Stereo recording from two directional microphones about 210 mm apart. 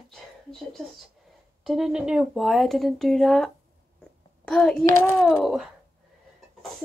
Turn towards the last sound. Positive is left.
turn(degrees=-5)  # may be behind; listen again after turning